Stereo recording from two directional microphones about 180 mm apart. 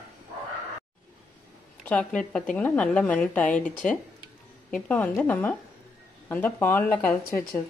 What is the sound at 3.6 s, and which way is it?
Speech, 45° left (ahead or behind).